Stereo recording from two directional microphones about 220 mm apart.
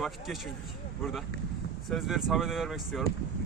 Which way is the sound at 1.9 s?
Centre (ahead or behind).